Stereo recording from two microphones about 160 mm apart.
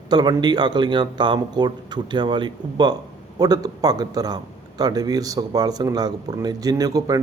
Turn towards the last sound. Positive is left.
turn(degrees=-20)  # may be behind; listen again after turning